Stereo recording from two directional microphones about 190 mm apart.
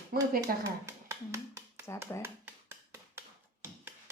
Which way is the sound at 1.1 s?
15° right (ahead or behind).